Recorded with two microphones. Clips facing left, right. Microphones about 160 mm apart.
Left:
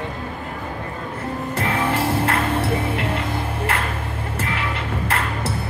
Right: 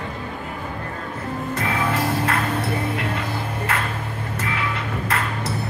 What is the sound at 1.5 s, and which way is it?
Music, 30° left (ahead or behind).